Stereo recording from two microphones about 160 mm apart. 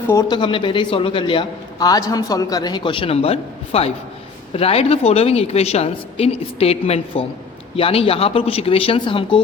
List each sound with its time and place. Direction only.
0.1 s a man's voice: 25° left (ahead or behind)